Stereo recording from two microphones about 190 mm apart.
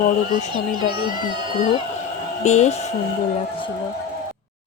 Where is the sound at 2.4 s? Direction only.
35° left (ahead or behind).